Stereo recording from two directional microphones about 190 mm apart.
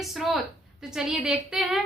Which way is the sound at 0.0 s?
Centre (ahead or behind).